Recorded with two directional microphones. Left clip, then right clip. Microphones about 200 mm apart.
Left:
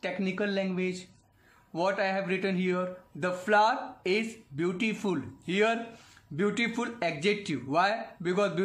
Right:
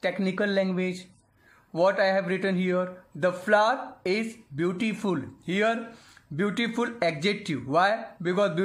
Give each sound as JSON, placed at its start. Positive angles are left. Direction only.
{"t": 0.0, "sound": "speech", "side_deg": -20}